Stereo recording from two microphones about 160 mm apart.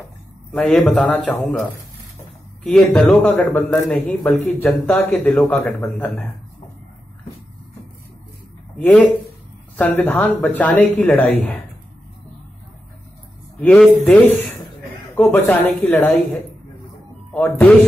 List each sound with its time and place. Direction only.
0.5 s a man's voice: centre (ahead or behind)
8.7 s a man's voice: 10° left (ahead or behind)
13.6 s a man's voice: 5° left (ahead or behind)
17.3 s a man's voice: 10° left (ahead or behind)